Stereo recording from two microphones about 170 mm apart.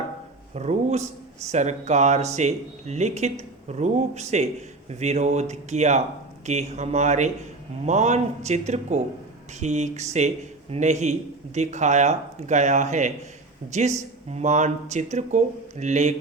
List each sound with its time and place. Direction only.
0.5 s speech: 40° right (ahead or behind)